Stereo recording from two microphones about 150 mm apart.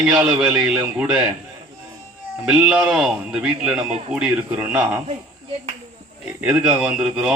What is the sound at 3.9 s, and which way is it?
Speech, 50° right (ahead or behind).